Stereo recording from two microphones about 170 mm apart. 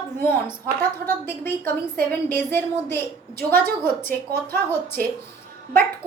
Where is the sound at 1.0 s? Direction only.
15° left (ahead or behind).